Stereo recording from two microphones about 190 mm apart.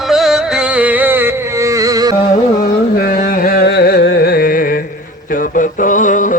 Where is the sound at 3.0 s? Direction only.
45° left (ahead or behind).